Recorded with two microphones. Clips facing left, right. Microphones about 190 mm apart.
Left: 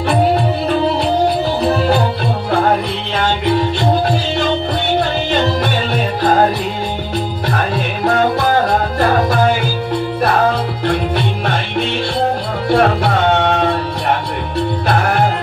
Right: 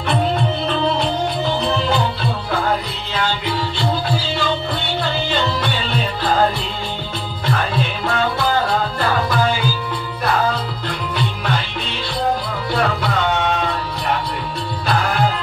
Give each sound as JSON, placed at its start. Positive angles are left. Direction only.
{"t": 2.5, "sound": "music", "side_deg": 55}
{"t": 4.9, "sound": "music", "side_deg": 50}
{"t": 12.6, "sound": "music", "side_deg": 60}